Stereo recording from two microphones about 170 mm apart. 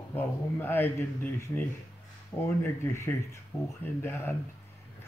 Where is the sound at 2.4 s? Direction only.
15° left (ahead or behind).